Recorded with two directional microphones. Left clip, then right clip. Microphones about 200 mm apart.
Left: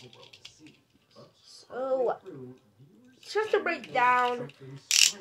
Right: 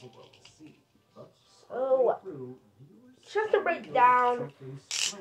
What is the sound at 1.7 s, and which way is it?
Music, 30° left (ahead or behind).